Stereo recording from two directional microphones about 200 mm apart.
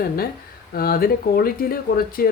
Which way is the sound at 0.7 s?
50° left (ahead or behind).